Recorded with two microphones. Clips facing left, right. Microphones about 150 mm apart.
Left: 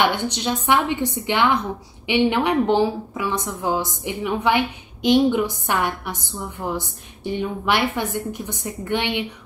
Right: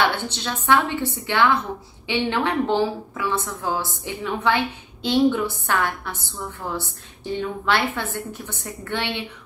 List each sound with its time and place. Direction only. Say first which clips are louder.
0.0 s a woman's voice: left 2 dB; 15° left (ahead or behind)